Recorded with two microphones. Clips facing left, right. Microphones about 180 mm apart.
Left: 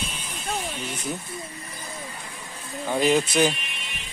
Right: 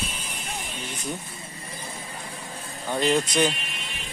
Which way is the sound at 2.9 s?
5° left (ahead or behind).